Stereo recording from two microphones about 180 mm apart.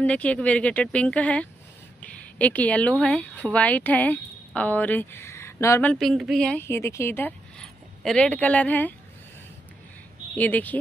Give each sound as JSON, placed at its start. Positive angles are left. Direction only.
{"t": 0.0, "sound": "speech", "side_deg": 5}
{"t": 10.3, "sound": "speech", "side_deg": 10}